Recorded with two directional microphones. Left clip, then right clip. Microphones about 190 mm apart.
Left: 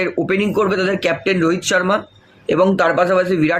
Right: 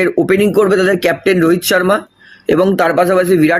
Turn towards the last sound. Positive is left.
turn(degrees=-45)  # may be behind; listen again after turning